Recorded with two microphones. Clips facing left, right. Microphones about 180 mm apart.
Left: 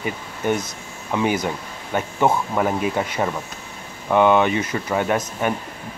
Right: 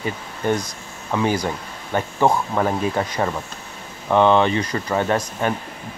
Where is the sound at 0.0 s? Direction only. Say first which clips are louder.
Even; 10° left (ahead or behind).